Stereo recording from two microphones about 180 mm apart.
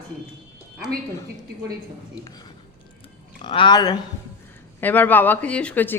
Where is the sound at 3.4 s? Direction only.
25° left (ahead or behind).